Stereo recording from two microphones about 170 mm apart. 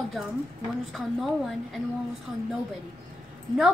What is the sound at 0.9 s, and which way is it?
A woman's voice, centre (ahead or behind).